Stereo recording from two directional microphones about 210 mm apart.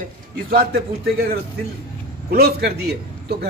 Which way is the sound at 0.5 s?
45° right (ahead or behind).